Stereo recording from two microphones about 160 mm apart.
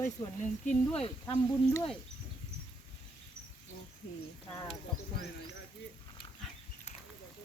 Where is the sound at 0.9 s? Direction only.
40° left (ahead or behind).